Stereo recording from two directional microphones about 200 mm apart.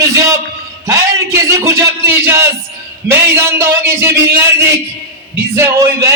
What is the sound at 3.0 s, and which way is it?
A man's voice, 10° right (ahead or behind).